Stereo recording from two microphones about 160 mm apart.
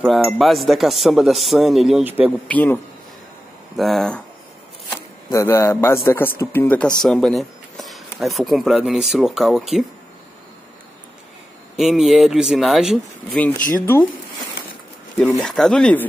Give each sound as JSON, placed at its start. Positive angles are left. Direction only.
{"t": 0.0, "sound": "speech", "side_deg": 5}
{"t": 2.4, "sound": "speech", "side_deg": 10}
{"t": 5.3, "sound": "speech", "side_deg": 20}
{"t": 11.7, "sound": "speech", "side_deg": 0}
{"t": 13.6, "sound": "speech", "side_deg": 55}
{"t": 15.4, "sound": "speech", "side_deg": 5}